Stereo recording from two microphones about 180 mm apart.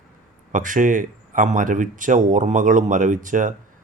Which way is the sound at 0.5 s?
45° right (ahead or behind).